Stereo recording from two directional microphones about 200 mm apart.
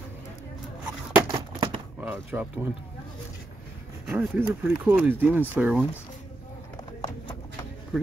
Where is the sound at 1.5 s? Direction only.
25° right (ahead or behind).